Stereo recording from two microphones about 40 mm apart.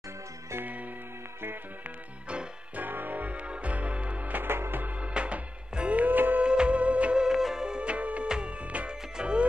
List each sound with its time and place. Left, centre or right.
2.7 s music: right
4.5 s music: right
5.0 s music: right
6.0 s music: right
6.4 s music: right
7.2 s music: centre
7.8 s music: right